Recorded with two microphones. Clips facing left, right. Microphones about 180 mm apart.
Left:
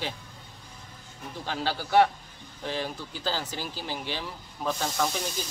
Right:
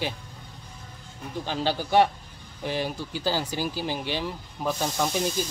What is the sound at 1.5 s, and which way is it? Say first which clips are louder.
Speech: right 2 dB; 15° right (ahead or behind).